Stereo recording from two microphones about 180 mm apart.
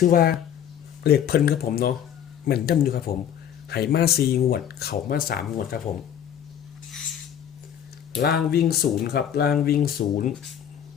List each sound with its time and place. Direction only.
0.0 s speech: 55° left (ahead or behind)
8.1 s speech: 65° left (ahead or behind); by 10.3 s 50° left (ahead or behind)